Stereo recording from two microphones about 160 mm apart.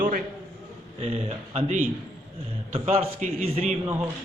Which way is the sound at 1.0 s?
45° right (ahead or behind).